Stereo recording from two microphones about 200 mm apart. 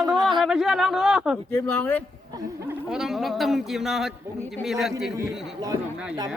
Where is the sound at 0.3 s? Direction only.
Centre (ahead or behind).